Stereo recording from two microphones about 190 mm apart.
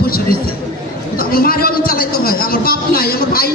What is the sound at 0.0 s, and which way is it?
Chatter, 50° left (ahead or behind).